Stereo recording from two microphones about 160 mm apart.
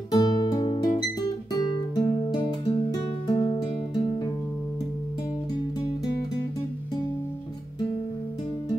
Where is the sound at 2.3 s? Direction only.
30° left (ahead or behind).